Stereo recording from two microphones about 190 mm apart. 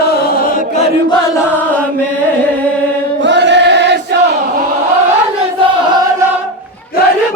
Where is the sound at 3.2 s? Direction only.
65° right (ahead or behind).